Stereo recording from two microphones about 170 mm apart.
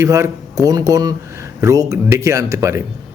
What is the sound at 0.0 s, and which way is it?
Speech, 20° right (ahead or behind).